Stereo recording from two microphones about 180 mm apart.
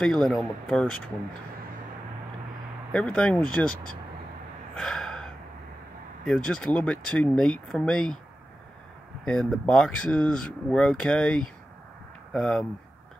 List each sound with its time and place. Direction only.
0.0 s speech: 5° left (ahead or behind)
2.9 s speech: 5° left (ahead or behind)
4.7 s gasp: 5° left (ahead or behind)
6.2 s speech: 5° left (ahead or behind)
9.2 s speech: 5° left (ahead or behind)